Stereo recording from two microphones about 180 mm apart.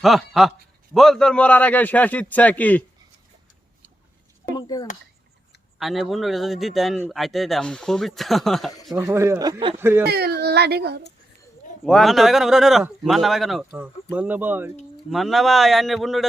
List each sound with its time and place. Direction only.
0.0 s a man's voice: centre (ahead or behind)
4.5 s a sound: 20° left (ahead or behind)
5.8 s a man's voice: centre (ahead or behind)
9.0 s speech: 15° right (ahead or behind)
9.7 s speech: 15° right (ahead or behind)
10.1 s speech: 65° right (ahead or behind)
11.9 s a man's voice: centre (ahead or behind)
15.1 s a man's voice: centre (ahead or behind)